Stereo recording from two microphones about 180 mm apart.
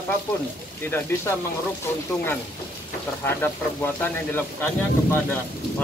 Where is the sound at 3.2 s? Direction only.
10° left (ahead or behind).